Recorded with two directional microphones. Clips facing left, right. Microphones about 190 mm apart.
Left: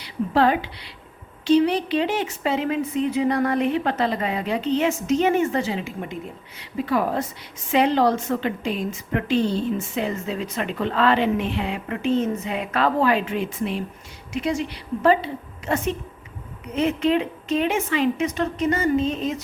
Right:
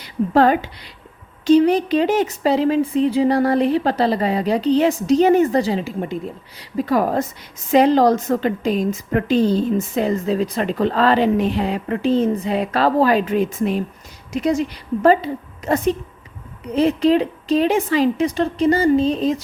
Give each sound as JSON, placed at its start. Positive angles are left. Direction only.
{"t": 0.0, "sound": "a woman's voice", "side_deg": -45}